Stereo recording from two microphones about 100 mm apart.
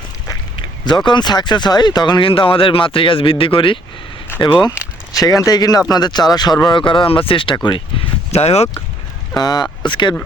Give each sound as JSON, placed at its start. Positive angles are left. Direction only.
{"t": 0.5, "sound": "speech", "side_deg": 50}
{"t": 5.1, "sound": "speech", "side_deg": 35}
{"t": 8.3, "sound": "speech", "side_deg": 90}
{"t": 9.3, "sound": "speech", "side_deg": 45}